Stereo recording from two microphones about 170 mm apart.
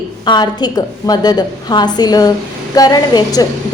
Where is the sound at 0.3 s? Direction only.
25° left (ahead or behind).